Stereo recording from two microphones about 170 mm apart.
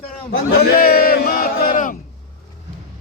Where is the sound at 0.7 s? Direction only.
60° left (ahead or behind).